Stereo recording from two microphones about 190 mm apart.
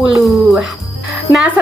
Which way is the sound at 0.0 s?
Centre (ahead or behind).